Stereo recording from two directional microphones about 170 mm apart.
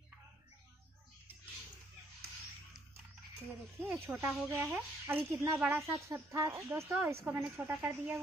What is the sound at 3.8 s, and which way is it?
Speech, 10° right (ahead or behind).